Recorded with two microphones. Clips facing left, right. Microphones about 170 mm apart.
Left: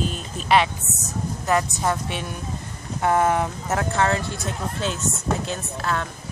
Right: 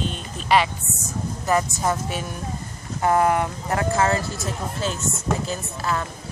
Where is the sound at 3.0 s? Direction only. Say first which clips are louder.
Right 1 dB; centre (ahead or behind).